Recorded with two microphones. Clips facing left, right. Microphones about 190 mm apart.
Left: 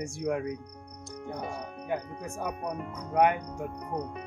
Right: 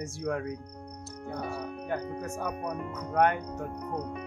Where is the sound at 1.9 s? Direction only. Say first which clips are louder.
Left 1 dB; 10° left (ahead or behind).